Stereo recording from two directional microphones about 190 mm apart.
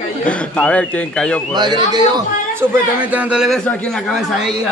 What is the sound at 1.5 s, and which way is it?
A man's voice, 20° right (ahead or behind).